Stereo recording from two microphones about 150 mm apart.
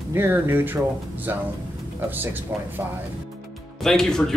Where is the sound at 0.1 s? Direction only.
15° right (ahead or behind).